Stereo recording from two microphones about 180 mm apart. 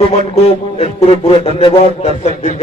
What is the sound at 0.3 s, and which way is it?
A man's voice, 35° left (ahead or behind).